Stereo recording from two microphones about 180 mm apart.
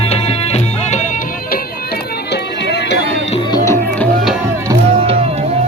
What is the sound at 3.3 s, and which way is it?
Music, 25° left (ahead or behind).